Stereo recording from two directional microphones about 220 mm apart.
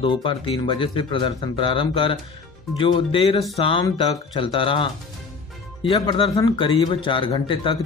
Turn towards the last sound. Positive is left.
turn(degrees=20)  # may be behind; listen again after turning